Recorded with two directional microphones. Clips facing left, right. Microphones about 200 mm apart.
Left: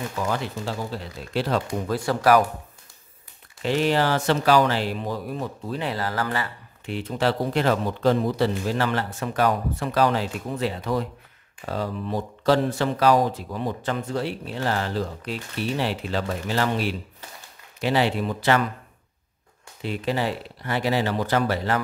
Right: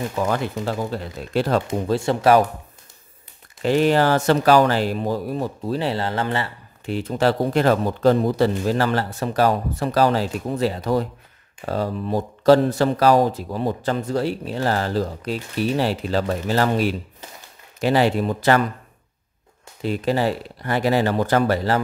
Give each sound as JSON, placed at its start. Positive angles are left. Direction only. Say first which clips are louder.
{"t": 0.2, "sound": "speech", "louder": "right 4 dB", "side_deg": -50}
{"t": 1.7, "sound": "speech", "louder": "right 4 dB", "side_deg": -25}
{"t": 3.6, "sound": "speech", "louder": "right 5 dB", "side_deg": -45}
{"t": 6.9, "sound": "speech", "louder": "right 4 dB", "side_deg": -40}
{"t": 19.8, "sound": "speech", "louder": "right 5 dB", "side_deg": -40}